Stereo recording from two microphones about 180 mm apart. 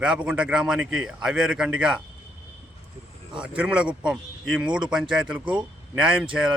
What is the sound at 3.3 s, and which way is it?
A man's voice, 5° right (ahead or behind).